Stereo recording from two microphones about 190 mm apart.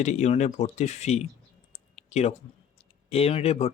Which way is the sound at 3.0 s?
30° left (ahead or behind).